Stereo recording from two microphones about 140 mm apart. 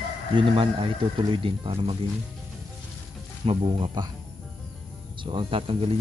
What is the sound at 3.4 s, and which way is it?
Speech, 35° right (ahead or behind).